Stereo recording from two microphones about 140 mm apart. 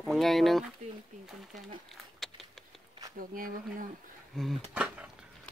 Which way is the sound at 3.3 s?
80° right.